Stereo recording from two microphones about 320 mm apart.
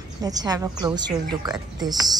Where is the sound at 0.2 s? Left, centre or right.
Centre.